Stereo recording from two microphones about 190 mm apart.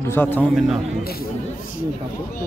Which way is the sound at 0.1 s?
10° left (ahead or behind).